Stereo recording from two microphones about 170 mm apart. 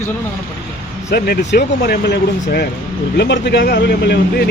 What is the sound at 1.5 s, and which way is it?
Speech, 75° left (ahead or behind).